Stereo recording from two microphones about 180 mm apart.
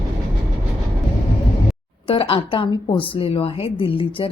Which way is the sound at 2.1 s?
30° left (ahead or behind).